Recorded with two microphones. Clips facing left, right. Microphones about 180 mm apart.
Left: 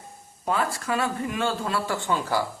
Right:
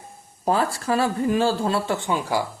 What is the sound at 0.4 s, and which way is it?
Speech, 30° right (ahead or behind).